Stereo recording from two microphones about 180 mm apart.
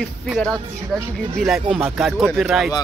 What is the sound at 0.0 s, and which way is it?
A man's voice, 5° left (ahead or behind).